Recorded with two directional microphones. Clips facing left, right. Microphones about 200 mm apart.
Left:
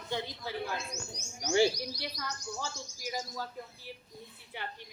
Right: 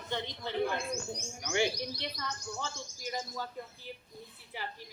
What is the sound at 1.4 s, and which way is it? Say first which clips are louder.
Speech: left 5 dB; 30° left (ahead or behind).